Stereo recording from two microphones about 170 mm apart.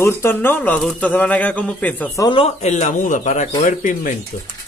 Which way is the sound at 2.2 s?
25° left (ahead or behind).